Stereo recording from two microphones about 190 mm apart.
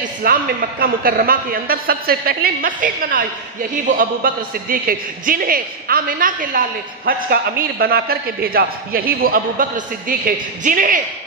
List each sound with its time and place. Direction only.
0.2 s a man's voice: 50° right (ahead or behind)
7.8 s a man's voice: 55° right (ahead or behind)